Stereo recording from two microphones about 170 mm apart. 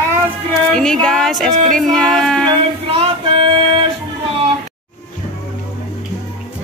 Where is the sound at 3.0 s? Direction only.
35° right (ahead or behind).